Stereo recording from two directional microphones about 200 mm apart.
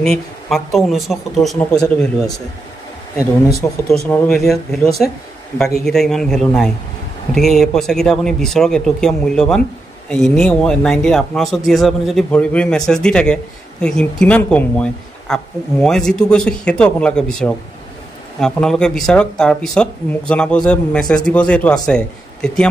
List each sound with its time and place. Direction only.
0.0 s speech: centre (ahead or behind)
3.2 s speech: 15° left (ahead or behind)
4.1 s speech: 5° left (ahead or behind)